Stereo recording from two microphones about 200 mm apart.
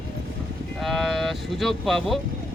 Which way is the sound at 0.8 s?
Centre (ahead or behind).